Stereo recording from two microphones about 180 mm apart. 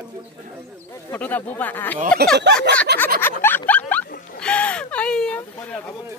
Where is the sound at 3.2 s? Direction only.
10° left (ahead or behind).